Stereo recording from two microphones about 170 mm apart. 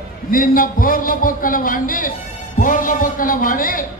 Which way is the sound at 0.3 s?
55° left (ahead or behind).